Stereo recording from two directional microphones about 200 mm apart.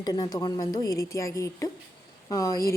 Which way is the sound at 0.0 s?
20° left (ahead or behind).